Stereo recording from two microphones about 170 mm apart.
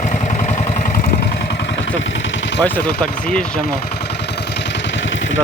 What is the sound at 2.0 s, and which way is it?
Vehicle, 90° left.